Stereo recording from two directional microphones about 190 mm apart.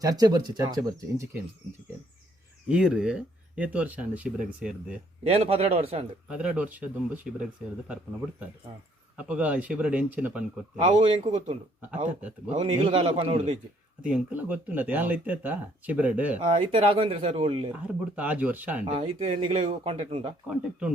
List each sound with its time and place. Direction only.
0.0 s speech: 20° right (ahead or behind)
2.6 s speech: 5° right (ahead or behind)
5.2 s speech: 30° right (ahead or behind)
6.2 s speech: 5° right (ahead or behind)
9.1 s speech: 5° right (ahead or behind)
10.8 s speech: 25° right (ahead or behind)
12.5 s speech: 30° right (ahead or behind)
14.0 s speech: 5° right (ahead or behind)
16.4 s speech: 25° right (ahead or behind)
17.8 s speech: 10° right (ahead or behind)
18.9 s speech: 30° right (ahead or behind)